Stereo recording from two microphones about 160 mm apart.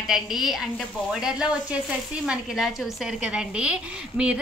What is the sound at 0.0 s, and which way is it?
A woman's voice, centre (ahead or behind).